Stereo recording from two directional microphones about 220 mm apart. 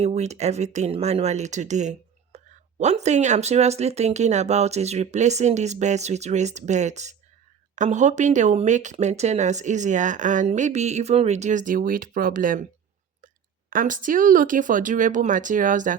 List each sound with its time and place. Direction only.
0.0 s speech: 30° right (ahead or behind)